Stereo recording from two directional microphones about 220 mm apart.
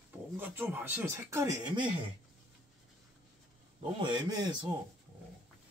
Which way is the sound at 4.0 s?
20° right (ahead or behind).